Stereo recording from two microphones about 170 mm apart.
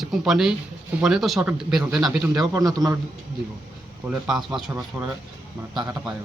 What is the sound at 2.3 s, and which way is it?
Speech, 20° right (ahead or behind).